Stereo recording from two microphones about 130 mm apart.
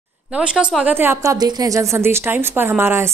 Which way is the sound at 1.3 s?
30° right (ahead or behind).